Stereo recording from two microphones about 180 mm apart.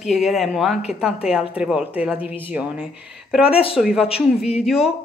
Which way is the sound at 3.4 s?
30° left (ahead or behind).